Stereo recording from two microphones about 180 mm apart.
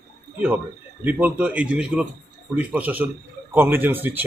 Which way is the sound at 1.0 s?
10° right (ahead or behind).